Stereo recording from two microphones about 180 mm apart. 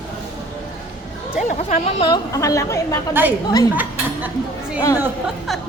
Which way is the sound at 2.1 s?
20° left (ahead or behind).